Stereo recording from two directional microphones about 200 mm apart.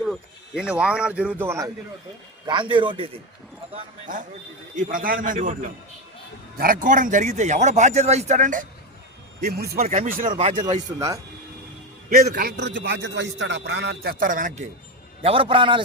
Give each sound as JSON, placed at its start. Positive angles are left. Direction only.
{"t": 0.0, "sound": "speech", "side_deg": 0}
{"t": 4.0, "sound": "a man's voice", "side_deg": -40}
{"t": 9.4, "sound": "speech", "side_deg": -50}
{"t": 9.8, "sound": "a man's voice", "side_deg": -40}
{"t": 12.0, "sound": "a man's voice", "side_deg": -45}
{"t": 15.2, "sound": "speech", "side_deg": -25}